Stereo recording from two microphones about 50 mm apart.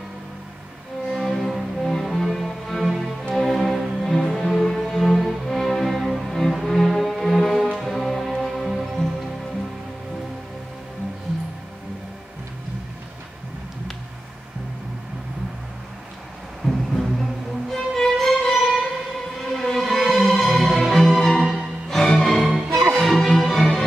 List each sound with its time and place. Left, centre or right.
1.1 s music: centre
16.6 s music: centre
22.7 s music: right
22.9 s music: centre